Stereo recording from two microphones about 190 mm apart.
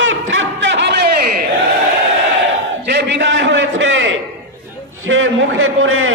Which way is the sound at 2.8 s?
65° right (ahead or behind).